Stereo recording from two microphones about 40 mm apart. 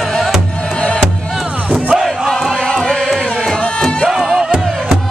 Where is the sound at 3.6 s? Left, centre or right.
Left.